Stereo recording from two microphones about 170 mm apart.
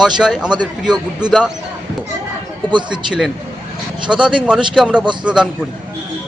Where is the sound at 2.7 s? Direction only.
25° right (ahead or behind).